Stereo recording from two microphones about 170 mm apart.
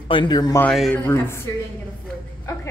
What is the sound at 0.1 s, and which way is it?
Speech, 25° left (ahead or behind).